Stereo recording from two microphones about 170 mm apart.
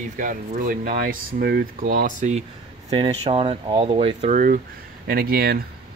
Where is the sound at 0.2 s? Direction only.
50° right (ahead or behind).